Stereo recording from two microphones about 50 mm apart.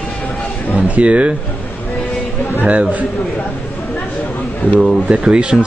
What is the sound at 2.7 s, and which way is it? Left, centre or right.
Speech, right.